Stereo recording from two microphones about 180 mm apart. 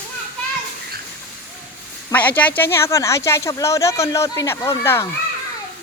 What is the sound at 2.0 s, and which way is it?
Speech, 10° left (ahead or behind).